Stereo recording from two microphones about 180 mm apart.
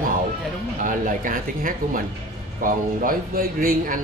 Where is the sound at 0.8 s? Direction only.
45° right (ahead or behind).